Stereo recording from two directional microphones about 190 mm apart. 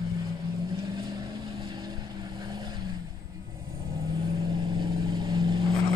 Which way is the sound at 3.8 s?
15° right (ahead or behind).